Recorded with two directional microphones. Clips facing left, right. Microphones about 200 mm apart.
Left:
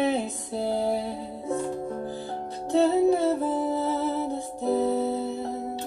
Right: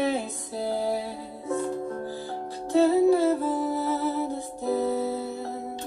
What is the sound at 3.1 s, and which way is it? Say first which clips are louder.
Music: right 1 dB; 25° left (ahead or behind).